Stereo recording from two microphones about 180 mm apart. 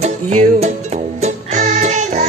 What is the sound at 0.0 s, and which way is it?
Music, 40° right (ahead or behind).